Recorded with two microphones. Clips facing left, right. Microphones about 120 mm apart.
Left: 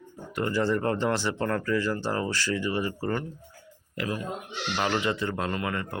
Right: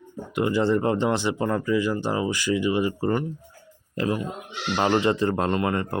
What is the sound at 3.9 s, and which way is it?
Speech, 30° right (ahead or behind).